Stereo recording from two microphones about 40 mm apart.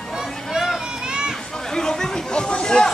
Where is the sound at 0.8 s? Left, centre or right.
Right.